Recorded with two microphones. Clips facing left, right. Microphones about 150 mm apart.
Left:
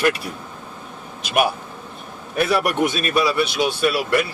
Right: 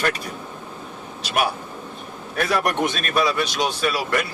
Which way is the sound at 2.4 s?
10° left (ahead or behind).